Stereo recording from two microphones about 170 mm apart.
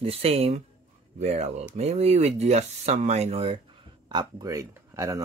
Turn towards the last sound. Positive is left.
turn(degrees=-20)  # may be behind; listen again after turning